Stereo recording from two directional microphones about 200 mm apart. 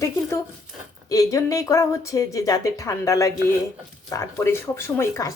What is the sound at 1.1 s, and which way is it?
A woman's voice, 15° left (ahead or behind).